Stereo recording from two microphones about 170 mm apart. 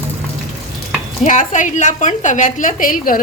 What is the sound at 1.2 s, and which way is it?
A woman's voice, 45° left (ahead or behind).